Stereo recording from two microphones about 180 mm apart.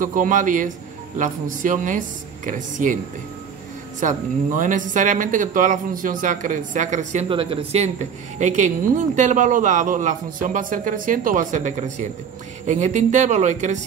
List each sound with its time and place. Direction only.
0.0 s a woman's voice: 45° right (ahead or behind)
4.0 s a woman's voice: 45° right (ahead or behind)
7.2 s a woman's voice: 30° right (ahead or behind)